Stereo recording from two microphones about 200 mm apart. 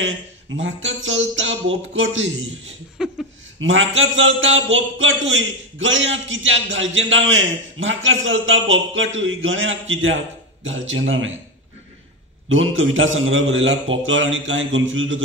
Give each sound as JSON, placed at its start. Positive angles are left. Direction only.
{"t": 0.0, "sound": "speech", "side_deg": -75}
{"t": 3.0, "sound": "a sound", "side_deg": -5}
{"t": 3.5, "sound": "speech", "side_deg": -75}
{"t": 12.4, "sound": "speech", "side_deg": -80}